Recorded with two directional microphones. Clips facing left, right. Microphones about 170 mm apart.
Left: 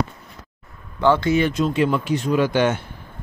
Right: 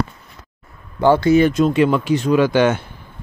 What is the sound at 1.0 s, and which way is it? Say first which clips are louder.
Speech: right 5 dB; 40° right (ahead or behind).